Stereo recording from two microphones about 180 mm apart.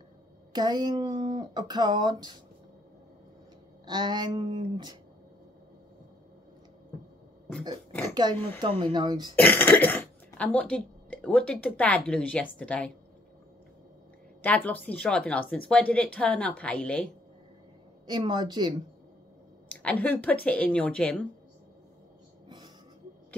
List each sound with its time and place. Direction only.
0.5 s speech: 25° right (ahead or behind)
3.8 s speech: 25° right (ahead or behind)
8.1 s speech: 20° right (ahead or behind)
9.3 s speech: 10° left (ahead or behind)
14.4 s a woman's voice: 10° left (ahead or behind)
18.0 s speech: 25° right (ahead or behind)
19.7 s a woman's voice: 10° left (ahead or behind)